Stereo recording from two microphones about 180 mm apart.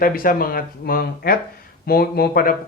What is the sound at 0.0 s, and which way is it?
Speech, 50° left (ahead or behind).